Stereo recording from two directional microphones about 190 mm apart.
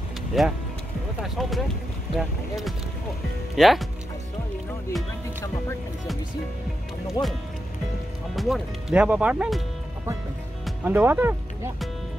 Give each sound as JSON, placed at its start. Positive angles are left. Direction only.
{"t": 0.3, "sound": "speech", "side_deg": 0}
{"t": 7.2, "sound": "speech", "side_deg": 25}
{"t": 8.4, "sound": "speech", "side_deg": 0}
{"t": 10.6, "sound": "speech", "side_deg": -10}